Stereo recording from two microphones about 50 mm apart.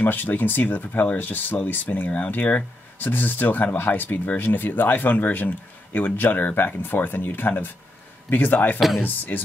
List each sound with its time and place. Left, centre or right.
0.0 s speech: left
8.7 s speech: centre
9.0 s speech: left